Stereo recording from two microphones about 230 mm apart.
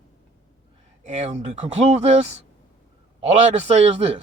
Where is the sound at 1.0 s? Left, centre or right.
Right.